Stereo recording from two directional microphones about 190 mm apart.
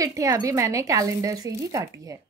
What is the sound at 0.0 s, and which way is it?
A woman's voice, 15° right (ahead or behind).